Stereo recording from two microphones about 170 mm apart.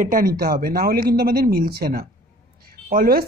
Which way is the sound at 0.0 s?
55° right (ahead or behind).